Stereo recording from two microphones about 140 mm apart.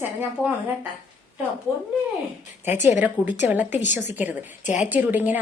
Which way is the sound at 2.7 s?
60° left (ahead or behind).